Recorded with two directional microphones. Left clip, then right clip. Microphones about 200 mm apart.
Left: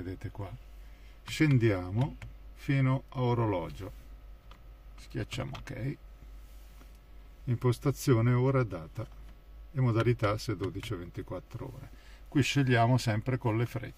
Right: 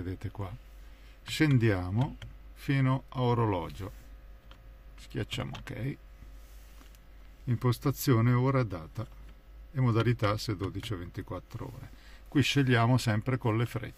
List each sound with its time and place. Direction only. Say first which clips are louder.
0.0 s speech: right 1 dB; 15° right (ahead or behind)
4.9 s speech: right 2 dB; 15° right (ahead or behind)
7.4 s speech: left 1 dB; 20° right (ahead or behind)